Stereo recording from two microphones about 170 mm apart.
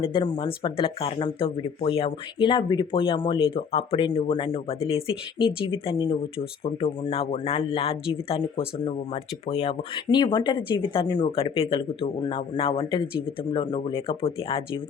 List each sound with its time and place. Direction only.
0.0 s speech: 30° left (ahead or behind)